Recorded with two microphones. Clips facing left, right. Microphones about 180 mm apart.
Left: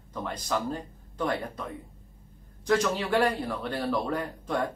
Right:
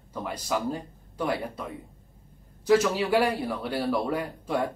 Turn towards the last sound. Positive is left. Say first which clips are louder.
# right 1 dB
turn(degrees=-10)  # may be behind; listen again after turning